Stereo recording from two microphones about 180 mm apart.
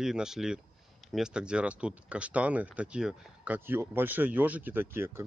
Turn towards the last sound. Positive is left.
turn(degrees=-15)  # may be behind; listen again after turning